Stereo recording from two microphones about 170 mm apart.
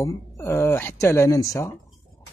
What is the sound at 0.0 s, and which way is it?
Speech, 15° left (ahead or behind).